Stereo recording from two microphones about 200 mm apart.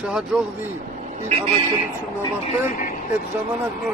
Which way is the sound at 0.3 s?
5° right (ahead or behind).